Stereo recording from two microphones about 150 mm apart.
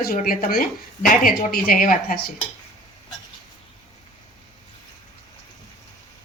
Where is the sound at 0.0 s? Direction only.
70° left (ahead or behind).